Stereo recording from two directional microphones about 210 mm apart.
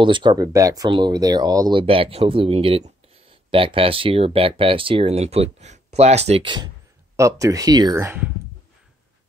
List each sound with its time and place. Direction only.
0.0 s speech: 20° right (ahead or behind)